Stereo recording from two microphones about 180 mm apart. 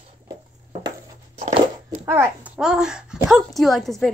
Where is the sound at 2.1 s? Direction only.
10° right (ahead or behind).